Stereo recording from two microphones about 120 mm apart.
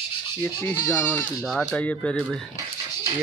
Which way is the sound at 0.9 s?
20° left (ahead or behind).